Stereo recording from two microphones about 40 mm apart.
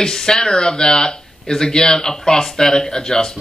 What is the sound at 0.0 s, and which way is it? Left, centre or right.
Speech, centre.